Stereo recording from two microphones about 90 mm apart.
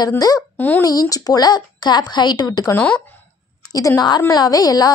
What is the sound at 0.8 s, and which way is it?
Speech, 40° left (ahead or behind).